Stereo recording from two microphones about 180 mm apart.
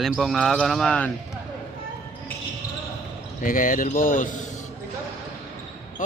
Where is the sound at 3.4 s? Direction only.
50° left (ahead or behind).